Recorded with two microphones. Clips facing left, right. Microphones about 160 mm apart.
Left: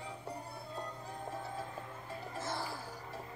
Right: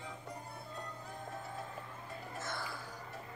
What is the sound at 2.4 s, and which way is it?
Burping, 30° left (ahead or behind).